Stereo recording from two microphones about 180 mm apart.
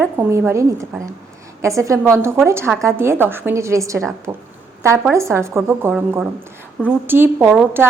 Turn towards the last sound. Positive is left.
turn(degrees=-10)  # may be behind; listen again after turning